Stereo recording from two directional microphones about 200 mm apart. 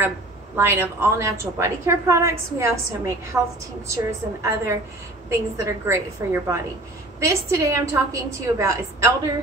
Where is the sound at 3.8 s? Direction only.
15° right (ahead or behind).